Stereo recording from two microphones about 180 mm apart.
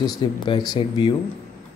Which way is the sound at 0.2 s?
25° left (ahead or behind).